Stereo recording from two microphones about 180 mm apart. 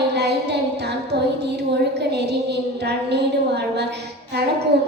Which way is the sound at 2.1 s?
65° right (ahead or behind).